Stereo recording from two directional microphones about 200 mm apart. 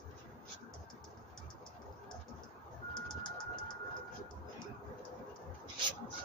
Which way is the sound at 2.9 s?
20° left (ahead or behind).